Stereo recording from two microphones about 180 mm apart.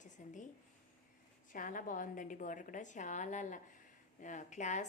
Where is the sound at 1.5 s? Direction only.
45° left (ahead or behind).